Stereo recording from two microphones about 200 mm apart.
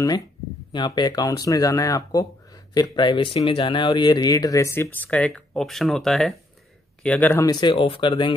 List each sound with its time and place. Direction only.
0.7 s speech: 20° left (ahead or behind)